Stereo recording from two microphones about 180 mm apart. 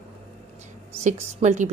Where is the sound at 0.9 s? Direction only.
40° right (ahead or behind).